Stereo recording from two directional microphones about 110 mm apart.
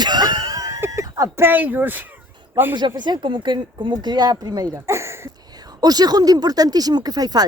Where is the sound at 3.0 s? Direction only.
45° right (ahead or behind).